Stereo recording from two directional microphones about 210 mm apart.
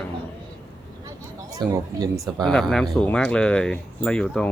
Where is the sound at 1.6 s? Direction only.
20° right (ahead or behind).